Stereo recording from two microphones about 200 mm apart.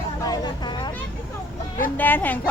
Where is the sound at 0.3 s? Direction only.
20° left (ahead or behind).